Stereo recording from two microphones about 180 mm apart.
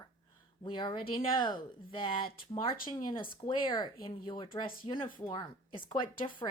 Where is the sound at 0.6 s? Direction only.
25° left (ahead or behind).